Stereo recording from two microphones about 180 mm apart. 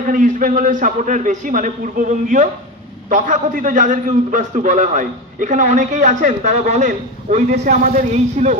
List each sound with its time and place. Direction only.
0.0 s a man's voice: 45° right (ahead or behind)